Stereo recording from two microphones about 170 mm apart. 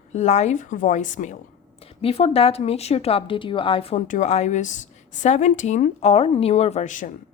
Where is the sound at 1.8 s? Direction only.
35° left (ahead or behind).